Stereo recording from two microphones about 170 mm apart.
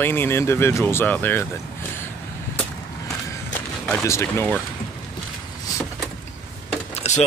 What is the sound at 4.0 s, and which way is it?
Speech, 15° left (ahead or behind).